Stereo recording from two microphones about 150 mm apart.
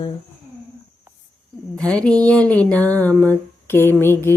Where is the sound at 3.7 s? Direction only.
15° left (ahead or behind).